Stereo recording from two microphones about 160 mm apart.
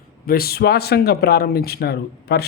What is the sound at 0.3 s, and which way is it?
Speech, 70° left (ahead or behind).